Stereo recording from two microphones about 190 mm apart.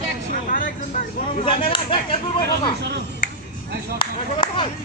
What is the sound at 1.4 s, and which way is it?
Speech, 25° left (ahead or behind).